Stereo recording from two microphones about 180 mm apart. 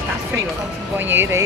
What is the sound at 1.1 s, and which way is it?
Speech, 15° right (ahead or behind).